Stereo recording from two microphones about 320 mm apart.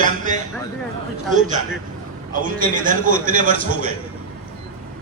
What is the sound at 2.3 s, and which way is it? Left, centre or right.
A man's voice, right.